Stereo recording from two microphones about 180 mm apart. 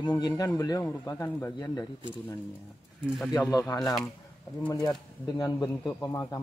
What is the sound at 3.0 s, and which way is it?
Speech, centre (ahead or behind).